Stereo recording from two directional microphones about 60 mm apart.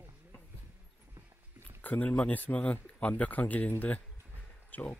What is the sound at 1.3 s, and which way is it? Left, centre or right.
Dog, right.